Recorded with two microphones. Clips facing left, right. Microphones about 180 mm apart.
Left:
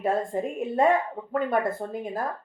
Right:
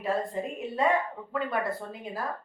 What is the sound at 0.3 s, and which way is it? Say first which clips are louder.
Speech: left 5 dB; 50° left (ahead or behind).